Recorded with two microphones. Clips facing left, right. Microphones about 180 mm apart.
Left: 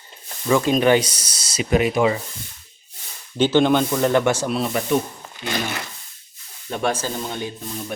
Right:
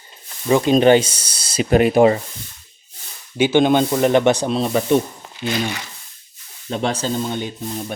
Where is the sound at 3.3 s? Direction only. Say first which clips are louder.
Right 2 dB; 10° right (ahead or behind); by 4.8 s 25° right (ahead or behind).